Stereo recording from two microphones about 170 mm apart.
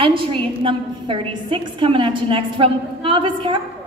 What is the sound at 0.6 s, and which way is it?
A woman's voice, 30° right (ahead or behind).